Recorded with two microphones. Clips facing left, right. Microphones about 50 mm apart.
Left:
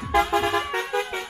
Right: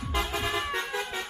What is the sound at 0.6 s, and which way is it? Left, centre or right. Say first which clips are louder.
Music: left 5 dB; left.